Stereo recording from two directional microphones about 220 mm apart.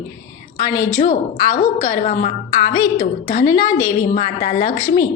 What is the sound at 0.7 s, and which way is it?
Speech, 10° left (ahead or behind).